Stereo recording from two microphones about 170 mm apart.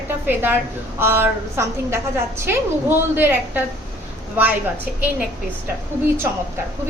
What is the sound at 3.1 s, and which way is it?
Speech, 10° right (ahead or behind).